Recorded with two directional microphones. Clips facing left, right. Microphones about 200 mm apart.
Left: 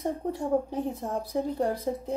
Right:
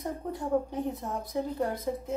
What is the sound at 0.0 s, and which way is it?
A woman's voice, 30° left (ahead or behind).